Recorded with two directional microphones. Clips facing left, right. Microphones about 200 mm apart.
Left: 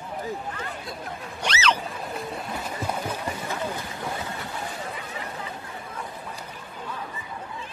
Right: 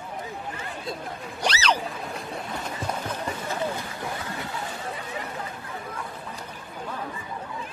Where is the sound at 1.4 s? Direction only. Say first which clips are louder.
Right 1 dB; 35° right (ahead or behind).